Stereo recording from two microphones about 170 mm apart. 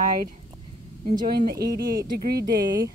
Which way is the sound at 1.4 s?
70° right (ahead or behind).